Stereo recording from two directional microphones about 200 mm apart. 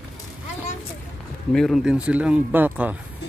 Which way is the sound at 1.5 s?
Centre (ahead or behind).